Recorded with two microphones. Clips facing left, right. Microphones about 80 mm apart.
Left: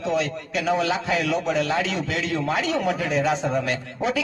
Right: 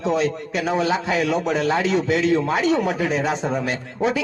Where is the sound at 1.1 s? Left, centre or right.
Right; by 3.7 s centre.